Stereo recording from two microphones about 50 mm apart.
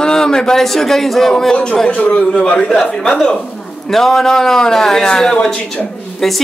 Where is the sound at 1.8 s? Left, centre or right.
Left.